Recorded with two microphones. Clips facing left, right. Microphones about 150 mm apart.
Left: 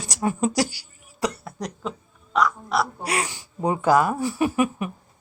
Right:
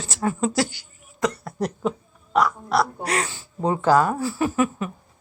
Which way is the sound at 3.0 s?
10° left (ahead or behind).